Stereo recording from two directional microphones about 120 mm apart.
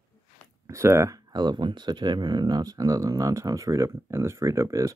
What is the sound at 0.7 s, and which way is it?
Speech, 25° right (ahead or behind).